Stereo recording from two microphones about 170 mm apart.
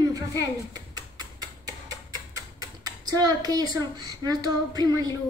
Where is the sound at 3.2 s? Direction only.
20° right (ahead or behind).